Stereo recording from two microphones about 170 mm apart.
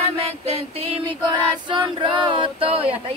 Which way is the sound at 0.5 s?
35° right (ahead or behind).